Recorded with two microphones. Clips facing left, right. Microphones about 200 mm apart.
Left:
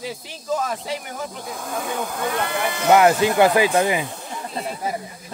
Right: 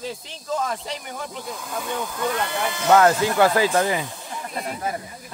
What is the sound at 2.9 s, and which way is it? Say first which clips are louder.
Speech: left 2 dB; 15° left (ahead or behind).